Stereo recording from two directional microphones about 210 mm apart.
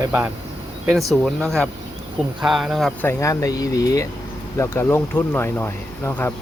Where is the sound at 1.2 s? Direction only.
Centre (ahead or behind).